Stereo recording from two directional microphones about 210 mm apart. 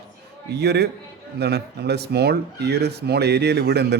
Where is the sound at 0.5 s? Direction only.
50° right (ahead or behind).